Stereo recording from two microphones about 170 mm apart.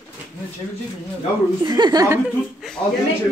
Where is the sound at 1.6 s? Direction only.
25° right (ahead or behind).